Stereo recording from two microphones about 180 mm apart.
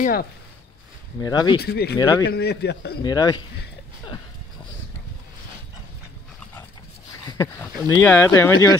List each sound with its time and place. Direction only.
0.0 s speech: 55° left (ahead or behind)
1.2 s a man's voice: 20° left (ahead or behind)
1.6 s speech: 65° left (ahead or behind)
2.0 s a man's voice: 20° left (ahead or behind)
2.2 s a man's voice: 70° left (ahead or behind)
3.0 s a man's voice: 20° left (ahead or behind)
8.0 s speech: 15° left (ahead or behind)